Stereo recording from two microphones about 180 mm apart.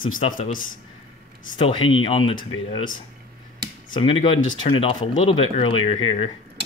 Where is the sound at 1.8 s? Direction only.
90° left.